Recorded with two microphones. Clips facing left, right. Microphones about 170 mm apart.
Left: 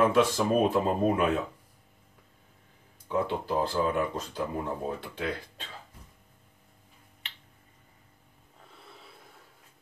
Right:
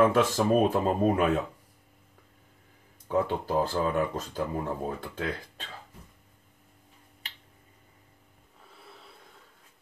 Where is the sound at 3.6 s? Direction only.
40° right (ahead or behind).